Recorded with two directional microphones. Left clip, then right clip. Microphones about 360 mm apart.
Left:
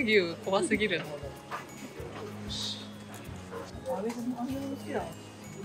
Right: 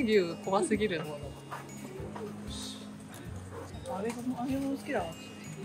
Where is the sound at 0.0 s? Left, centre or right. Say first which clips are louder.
Left 2 dB; centre.